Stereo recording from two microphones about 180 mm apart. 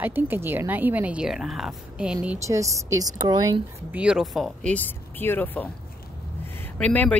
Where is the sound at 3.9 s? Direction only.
5° right (ahead or behind).